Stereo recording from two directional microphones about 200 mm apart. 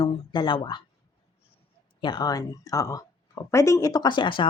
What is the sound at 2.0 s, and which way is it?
Speech, 20° left (ahead or behind).